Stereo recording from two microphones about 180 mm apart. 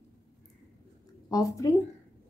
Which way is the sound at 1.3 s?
20° left (ahead or behind).